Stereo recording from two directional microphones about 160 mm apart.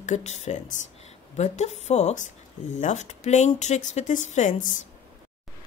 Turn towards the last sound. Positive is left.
turn(degrees=50)  # may be behind; listen again after turning